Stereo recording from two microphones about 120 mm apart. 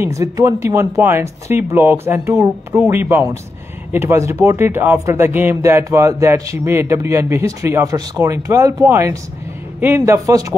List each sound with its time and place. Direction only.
0.0 s speech: 25° right (ahead or behind)